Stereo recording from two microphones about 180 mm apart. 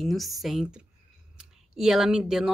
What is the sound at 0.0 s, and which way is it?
Speech, centre (ahead or behind).